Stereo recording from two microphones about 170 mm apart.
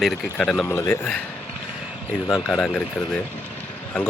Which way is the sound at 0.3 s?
5° left (ahead or behind).